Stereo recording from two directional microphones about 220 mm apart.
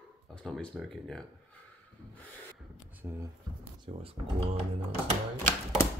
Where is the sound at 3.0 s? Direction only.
10° right (ahead or behind).